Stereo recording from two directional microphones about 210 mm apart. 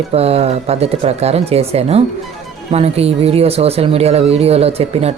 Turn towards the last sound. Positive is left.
turn(degrees=-30)  # may be behind; listen again after turning